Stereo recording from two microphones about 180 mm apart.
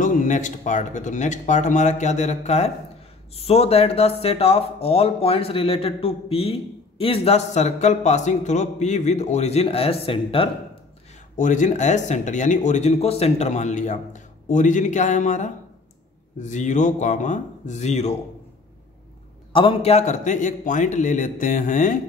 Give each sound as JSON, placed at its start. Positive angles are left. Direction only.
{"t": 0.0, "sound": "a man's voice", "side_deg": 45}
{"t": 11.3, "sound": "speech", "side_deg": 45}
{"t": 19.5, "sound": "speech", "side_deg": 30}